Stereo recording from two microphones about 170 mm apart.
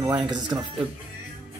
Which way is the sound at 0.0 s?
20° right (ahead or behind).